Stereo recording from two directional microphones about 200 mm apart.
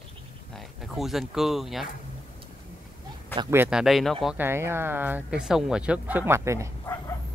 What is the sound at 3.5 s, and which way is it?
Speech, 5° right (ahead or behind).